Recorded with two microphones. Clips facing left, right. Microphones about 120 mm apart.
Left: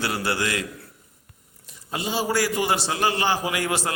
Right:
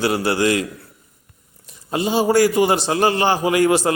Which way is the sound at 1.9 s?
25° right (ahead or behind).